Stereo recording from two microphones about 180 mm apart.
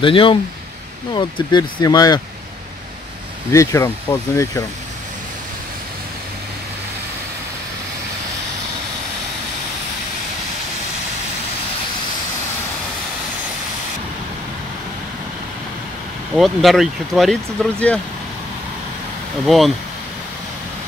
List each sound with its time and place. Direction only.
0.0 s speech: 30° left (ahead or behind)
3.5 s speech: 15° left (ahead or behind)
16.3 s speech: centre (ahead or behind)
19.4 s speech: centre (ahead or behind)